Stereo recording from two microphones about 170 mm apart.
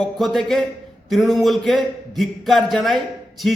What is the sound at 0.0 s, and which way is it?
A man's voice, centre (ahead or behind).